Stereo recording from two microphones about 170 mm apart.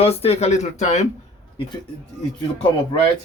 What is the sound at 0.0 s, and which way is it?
Speech, 35° left (ahead or behind).